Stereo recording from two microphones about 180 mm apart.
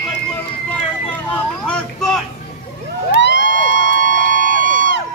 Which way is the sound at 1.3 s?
5° left (ahead or behind).